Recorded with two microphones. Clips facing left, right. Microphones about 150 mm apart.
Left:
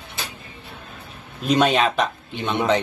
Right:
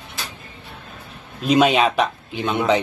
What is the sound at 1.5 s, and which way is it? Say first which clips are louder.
Speech: right 2 dB; centre (ahead or behind).